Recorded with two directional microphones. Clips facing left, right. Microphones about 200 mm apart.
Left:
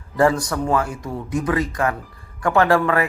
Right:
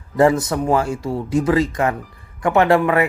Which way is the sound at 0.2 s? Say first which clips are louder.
Right 3 dB; 25° right (ahead or behind).